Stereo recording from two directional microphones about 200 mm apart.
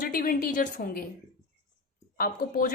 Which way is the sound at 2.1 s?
45° left (ahead or behind).